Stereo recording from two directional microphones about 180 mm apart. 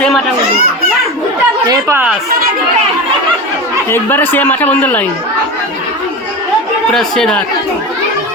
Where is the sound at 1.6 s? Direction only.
15° right (ahead or behind).